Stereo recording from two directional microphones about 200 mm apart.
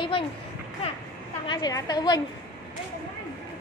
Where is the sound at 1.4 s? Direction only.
20° left (ahead or behind).